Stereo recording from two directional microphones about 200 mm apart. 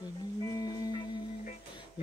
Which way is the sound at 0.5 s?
20° left (ahead or behind).